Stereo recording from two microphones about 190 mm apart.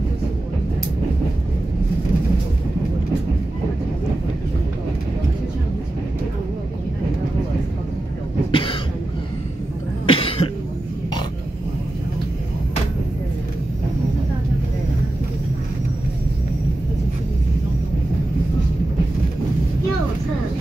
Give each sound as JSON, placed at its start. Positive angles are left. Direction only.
{"t": 8.5, "sound": "cough", "side_deg": 25}
{"t": 10.0, "sound": "cough", "side_deg": 30}